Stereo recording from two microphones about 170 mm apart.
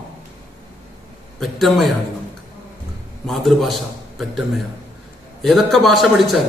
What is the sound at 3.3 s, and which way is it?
Speech, centre (ahead or behind).